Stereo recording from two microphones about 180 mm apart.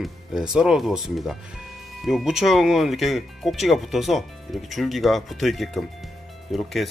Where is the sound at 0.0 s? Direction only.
5° right (ahead or behind).